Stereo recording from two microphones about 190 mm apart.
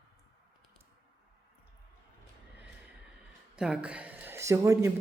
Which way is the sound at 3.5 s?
5° right (ahead or behind).